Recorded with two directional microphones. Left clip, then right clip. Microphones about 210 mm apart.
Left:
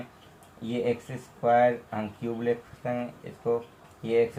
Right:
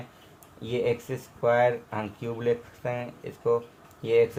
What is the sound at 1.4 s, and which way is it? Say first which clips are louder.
Speech: left 1 dB; 40° right (ahead or behind).